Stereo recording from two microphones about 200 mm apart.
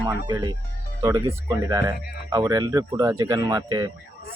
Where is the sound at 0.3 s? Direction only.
20° right (ahead or behind).